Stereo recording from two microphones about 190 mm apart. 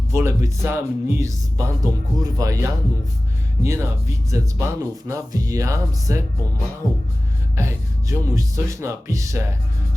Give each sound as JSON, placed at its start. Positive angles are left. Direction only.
{"t": 0.1, "sound": "speech", "side_deg": -15}
{"t": 7.5, "sound": "speech", "side_deg": -15}